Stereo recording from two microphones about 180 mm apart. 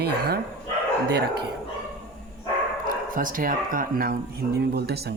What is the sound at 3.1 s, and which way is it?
A man's voice, 50° right (ahead or behind).